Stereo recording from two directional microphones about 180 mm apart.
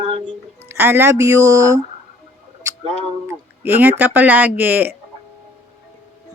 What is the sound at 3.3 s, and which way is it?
Speech, 10° right (ahead or behind).